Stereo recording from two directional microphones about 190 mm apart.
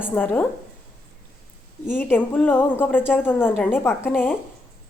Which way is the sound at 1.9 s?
10° left (ahead or behind).